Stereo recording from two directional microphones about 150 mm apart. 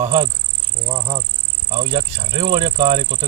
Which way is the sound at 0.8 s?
20° right (ahead or behind).